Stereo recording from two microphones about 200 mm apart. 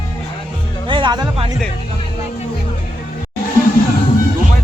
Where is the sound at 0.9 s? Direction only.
25° right (ahead or behind).